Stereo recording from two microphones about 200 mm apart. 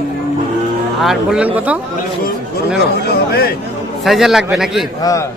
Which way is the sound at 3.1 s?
50° left (ahead or behind).